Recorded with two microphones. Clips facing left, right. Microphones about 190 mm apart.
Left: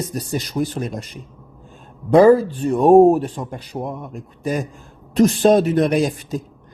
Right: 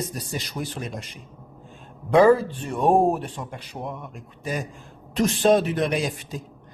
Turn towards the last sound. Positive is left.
turn(degrees=45)  # may be behind; listen again after turning